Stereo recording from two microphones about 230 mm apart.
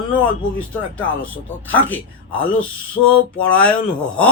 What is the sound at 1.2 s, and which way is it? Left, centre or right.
A man's voice, centre.